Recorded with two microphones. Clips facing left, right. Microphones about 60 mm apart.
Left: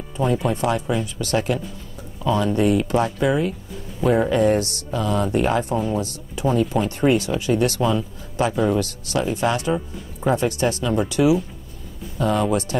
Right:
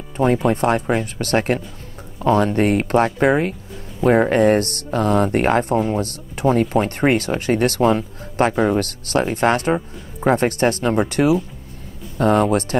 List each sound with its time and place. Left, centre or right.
0.2 s speech: right